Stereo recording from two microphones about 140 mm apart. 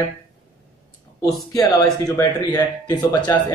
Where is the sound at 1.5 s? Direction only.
25° left (ahead or behind).